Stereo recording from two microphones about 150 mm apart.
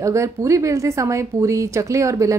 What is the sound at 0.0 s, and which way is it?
Speech, 20° right (ahead or behind).